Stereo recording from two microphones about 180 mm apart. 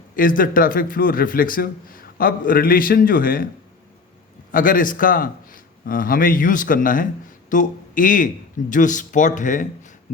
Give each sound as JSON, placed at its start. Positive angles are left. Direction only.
{"t": 0.2, "sound": "a man's voice", "side_deg": 50}
{"t": 4.5, "sound": "a man's voice", "side_deg": 50}